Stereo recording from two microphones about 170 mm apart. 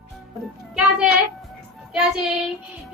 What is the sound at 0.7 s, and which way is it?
Speech, 5° right (ahead or behind).